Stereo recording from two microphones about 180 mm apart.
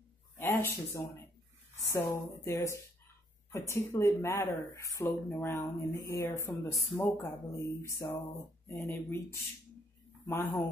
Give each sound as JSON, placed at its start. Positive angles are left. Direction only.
{"t": 0.4, "sound": "speech", "side_deg": 15}